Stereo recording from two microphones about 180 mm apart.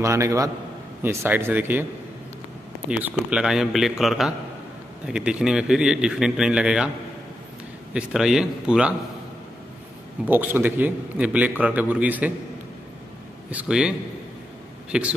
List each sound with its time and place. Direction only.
0.0 s a man's voice: 15° right (ahead or behind)
2.9 s speech: 5° right (ahead or behind)
7.9 s speech: centre (ahead or behind)
10.2 s a man's voice: 10° right (ahead or behind)
13.5 s a man's voice: 5° right (ahead or behind)